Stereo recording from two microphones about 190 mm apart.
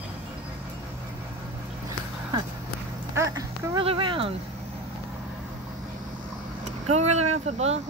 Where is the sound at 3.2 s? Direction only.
15° right (ahead or behind).